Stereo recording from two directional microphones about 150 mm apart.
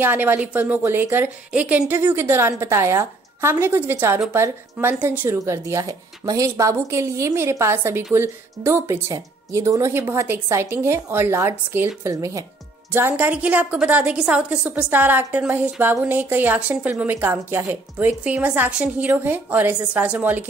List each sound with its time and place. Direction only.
0.0 s speech: 15° right (ahead or behind)